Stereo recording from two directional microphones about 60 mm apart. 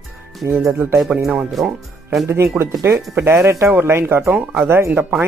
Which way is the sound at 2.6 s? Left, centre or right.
Right.